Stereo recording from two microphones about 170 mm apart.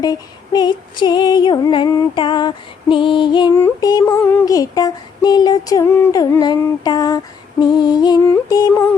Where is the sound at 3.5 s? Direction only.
15° left (ahead or behind).